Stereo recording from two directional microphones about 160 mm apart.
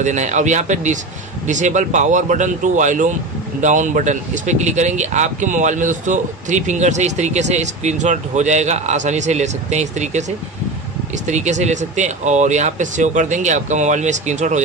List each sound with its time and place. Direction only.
0.0 s speech: 50° right (ahead or behind)
11.2 s speech: 45° right (ahead or behind)